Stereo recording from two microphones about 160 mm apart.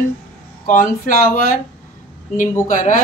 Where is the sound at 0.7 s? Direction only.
60° left (ahead or behind).